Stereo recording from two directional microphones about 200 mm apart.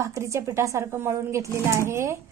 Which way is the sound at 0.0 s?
15° right (ahead or behind).